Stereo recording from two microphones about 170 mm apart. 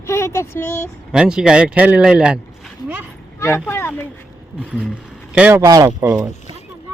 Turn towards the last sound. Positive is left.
turn(degrees=-15)  # may be behind; listen again after turning